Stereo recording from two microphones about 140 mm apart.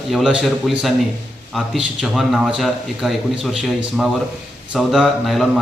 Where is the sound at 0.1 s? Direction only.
5° right (ahead or behind).